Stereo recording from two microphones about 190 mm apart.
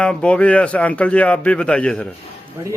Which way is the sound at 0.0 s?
5° left (ahead or behind).